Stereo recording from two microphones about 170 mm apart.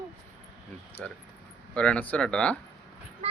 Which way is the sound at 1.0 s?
5° left (ahead or behind).